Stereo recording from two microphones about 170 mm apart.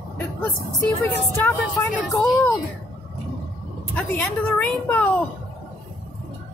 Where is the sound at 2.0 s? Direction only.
Centre (ahead or behind).